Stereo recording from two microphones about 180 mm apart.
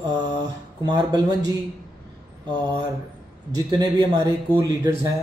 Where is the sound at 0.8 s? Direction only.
25° right (ahead or behind).